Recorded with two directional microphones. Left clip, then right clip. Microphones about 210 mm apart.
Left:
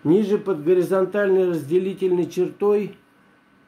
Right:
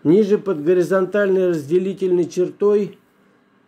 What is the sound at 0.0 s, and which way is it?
A man's voice, 30° right (ahead or behind).